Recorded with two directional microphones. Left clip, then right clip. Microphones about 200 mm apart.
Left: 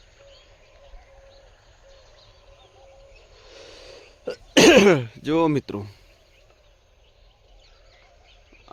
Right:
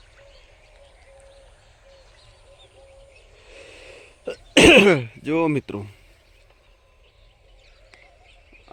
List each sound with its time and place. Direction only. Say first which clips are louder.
3.4 s cough: right 1 dB; 10° left (ahead or behind)